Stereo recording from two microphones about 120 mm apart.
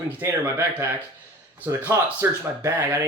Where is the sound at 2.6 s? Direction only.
25° right (ahead or behind).